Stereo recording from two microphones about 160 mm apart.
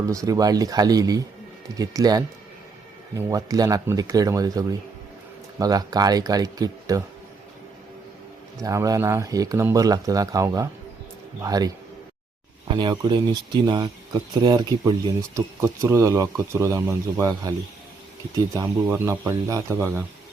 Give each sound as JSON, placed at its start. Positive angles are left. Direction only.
{"t": 0.0, "sound": "speech", "side_deg": -20}
{"t": 8.5, "sound": "speech", "side_deg": -20}
{"t": 12.7, "sound": "speech", "side_deg": -30}